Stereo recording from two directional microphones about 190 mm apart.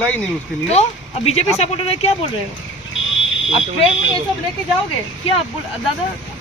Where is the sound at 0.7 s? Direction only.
35° left (ahead or behind).